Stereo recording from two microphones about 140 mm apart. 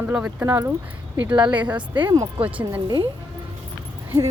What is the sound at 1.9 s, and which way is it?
Speech, 35° right (ahead or behind).